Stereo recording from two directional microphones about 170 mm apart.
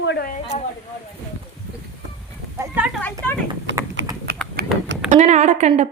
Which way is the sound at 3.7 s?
90° right.